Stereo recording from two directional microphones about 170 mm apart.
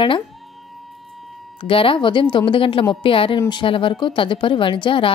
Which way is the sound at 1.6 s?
30° left (ahead or behind).